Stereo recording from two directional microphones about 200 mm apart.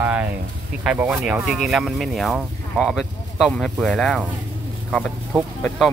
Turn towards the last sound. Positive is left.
turn(degrees=0)  # may be behind; listen again after turning